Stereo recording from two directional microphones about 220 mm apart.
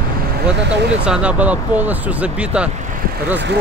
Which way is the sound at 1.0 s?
5° right (ahead or behind).